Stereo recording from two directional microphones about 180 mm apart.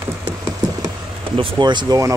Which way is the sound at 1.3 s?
25° right (ahead or behind).